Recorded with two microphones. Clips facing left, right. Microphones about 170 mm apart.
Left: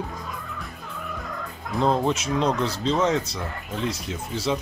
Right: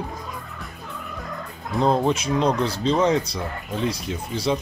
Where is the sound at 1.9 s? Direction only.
Centre (ahead or behind).